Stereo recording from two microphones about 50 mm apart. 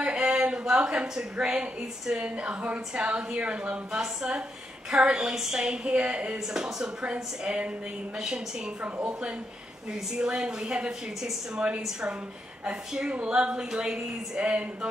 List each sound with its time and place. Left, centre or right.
0.0 s a sound: centre
1.3 s a woman's voice: centre
8.8 s speech: right
10.1 s a woman's voice: centre